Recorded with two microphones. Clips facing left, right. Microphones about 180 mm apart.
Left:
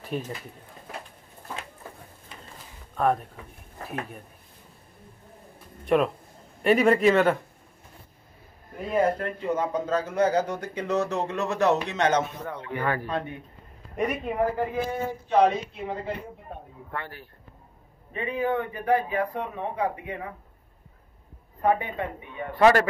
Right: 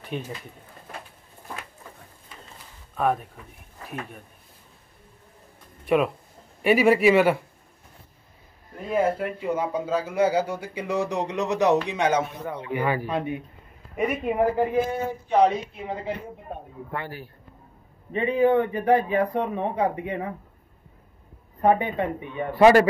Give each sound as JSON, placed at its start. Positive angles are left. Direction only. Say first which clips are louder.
{"t": 0.1, "sound": "speech", "louder": "left 1 dB", "side_deg": 0}
{"t": 3.0, "sound": "speech", "louder": "even", "side_deg": 0}
{"t": 5.9, "sound": "speech", "louder": "right 1 dB", "side_deg": -5}
{"t": 8.8, "sound": "speech", "louder": "right 1 dB", "side_deg": -5}
{"t": 18.1, "sound": "speech", "louder": "right 7 dB", "side_deg": -25}
{"t": 21.5, "sound": "speech", "louder": "right 4 dB", "side_deg": -25}